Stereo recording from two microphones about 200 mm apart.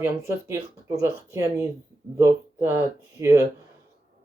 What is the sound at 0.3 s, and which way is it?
Speech, 15° right (ahead or behind).